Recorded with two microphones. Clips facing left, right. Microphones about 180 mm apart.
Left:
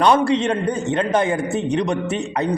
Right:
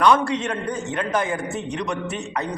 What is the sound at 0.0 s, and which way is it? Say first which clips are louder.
A man's voice: left 3 dB; 25° left (ahead or behind).